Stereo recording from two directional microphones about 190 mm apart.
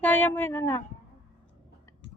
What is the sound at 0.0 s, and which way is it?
Speech, 10° left (ahead or behind).